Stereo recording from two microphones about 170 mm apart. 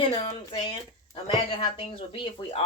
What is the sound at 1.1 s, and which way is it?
Speech, 30° left (ahead or behind).